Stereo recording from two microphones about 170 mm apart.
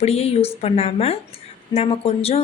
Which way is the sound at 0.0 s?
35° left (ahead or behind).